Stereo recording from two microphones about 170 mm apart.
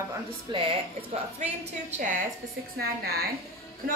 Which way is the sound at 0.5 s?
30° right (ahead or behind).